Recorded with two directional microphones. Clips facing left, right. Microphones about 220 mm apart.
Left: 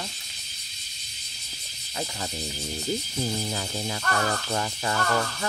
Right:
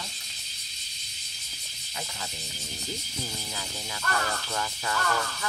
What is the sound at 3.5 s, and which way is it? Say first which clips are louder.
Speech: left 8 dB; 40° left (ahead or behind).